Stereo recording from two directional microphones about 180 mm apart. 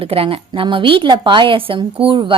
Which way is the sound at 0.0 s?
30° right (ahead or behind).